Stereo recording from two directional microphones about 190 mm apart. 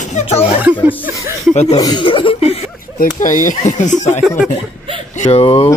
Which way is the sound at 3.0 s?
40° left (ahead or behind).